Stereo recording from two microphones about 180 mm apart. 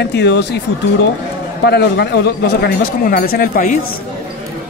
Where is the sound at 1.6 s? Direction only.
65° left (ahead or behind); by 3.8 s 50° left (ahead or behind).